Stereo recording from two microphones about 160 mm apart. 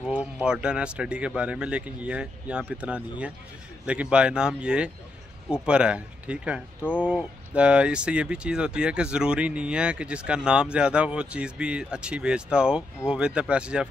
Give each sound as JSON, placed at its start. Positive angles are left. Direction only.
{"t": 0.1, "sound": "speech", "side_deg": -5}